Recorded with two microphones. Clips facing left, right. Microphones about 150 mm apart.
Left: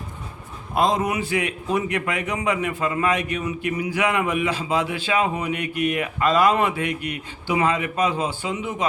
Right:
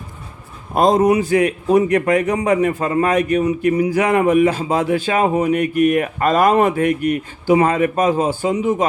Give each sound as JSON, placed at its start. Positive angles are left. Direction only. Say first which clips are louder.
{"t": 0.7, "sound": "a man's voice", "louder": "right 8 dB", "side_deg": -45}